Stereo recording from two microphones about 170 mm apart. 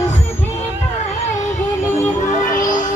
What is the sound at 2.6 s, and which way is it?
Music, 50° left (ahead or behind).